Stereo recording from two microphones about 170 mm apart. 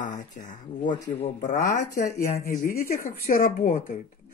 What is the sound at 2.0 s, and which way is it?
Speech, 15° left (ahead or behind).